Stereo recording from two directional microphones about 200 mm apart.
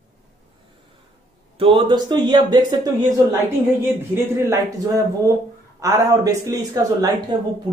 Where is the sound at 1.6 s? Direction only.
25° right (ahead or behind).